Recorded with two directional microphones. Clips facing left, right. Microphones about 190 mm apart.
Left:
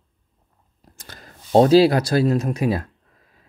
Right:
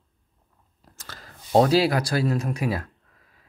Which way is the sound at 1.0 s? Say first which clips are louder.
Left 1 dB; 15° left (ahead or behind).